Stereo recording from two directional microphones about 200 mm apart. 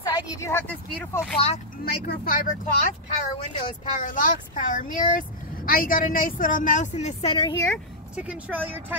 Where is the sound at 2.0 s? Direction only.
45° left (ahead or behind).